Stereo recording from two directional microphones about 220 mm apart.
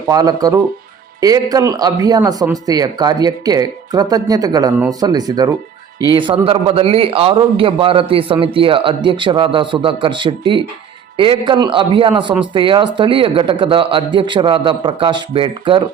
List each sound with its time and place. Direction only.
0.1 s speech: 15° right (ahead or behind)